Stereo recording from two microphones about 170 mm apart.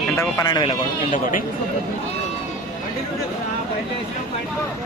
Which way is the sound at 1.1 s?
50° left (ahead or behind).